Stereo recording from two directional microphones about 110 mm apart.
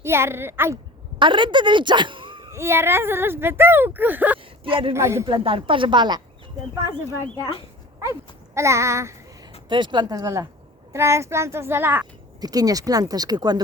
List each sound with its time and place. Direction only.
0.0 s speech: 25° right (ahead or behind)
1.2 s a woman's voice: 45° right (ahead or behind)
2.5 s speech: 25° right (ahead or behind)
4.6 s speech: 50° right (ahead or behind)
4.9 s speech: 25° right (ahead or behind)
5.2 s speech: 50° right (ahead or behind)
8.5 s speech: 25° right (ahead or behind)
9.6 s speech: 45° right (ahead or behind); by 12.0 s 20° right (ahead or behind)
12.4 s speech: 35° right (ahead or behind)